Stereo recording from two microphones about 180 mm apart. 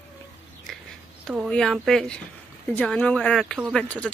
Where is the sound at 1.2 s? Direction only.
Centre (ahead or behind).